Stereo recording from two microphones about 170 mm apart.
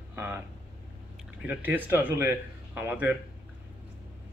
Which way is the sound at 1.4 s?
10° right (ahead or behind).